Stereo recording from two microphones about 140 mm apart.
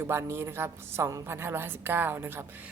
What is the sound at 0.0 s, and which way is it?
Speech, 20° right (ahead or behind).